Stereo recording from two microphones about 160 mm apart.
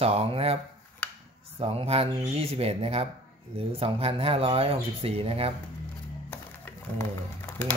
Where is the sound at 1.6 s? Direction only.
35° right (ahead or behind).